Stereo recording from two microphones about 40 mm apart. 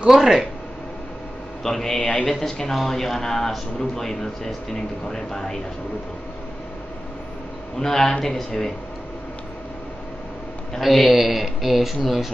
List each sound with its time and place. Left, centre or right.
0.1 s speech: centre
1.6 s speech: centre
2.0 s a man's voice: left
2.2 s speech: centre
7.8 s speech: centre
10.8 s speech: centre